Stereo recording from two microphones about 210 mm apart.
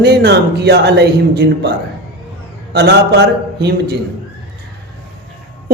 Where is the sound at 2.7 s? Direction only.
50° right (ahead or behind).